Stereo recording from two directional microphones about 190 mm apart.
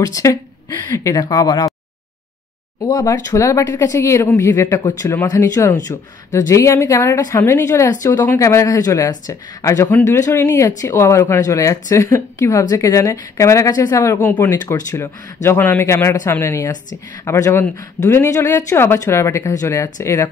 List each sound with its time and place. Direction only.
0.0 s speech: 15° left (ahead or behind)
2.8 s speech: 20° left (ahead or behind)